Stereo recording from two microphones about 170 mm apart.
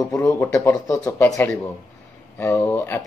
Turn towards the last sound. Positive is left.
turn(degrees=10)  # may be behind; listen again after turning